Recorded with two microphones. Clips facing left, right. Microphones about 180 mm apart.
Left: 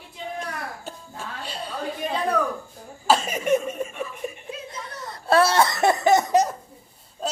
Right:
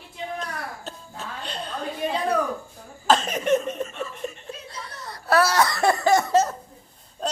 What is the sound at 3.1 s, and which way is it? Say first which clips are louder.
Chuckle: even; 10° left (ahead or behind).